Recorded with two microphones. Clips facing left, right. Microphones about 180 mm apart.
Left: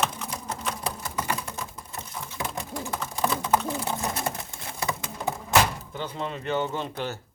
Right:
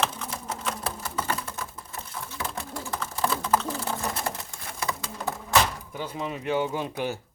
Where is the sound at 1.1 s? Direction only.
15° left (ahead or behind).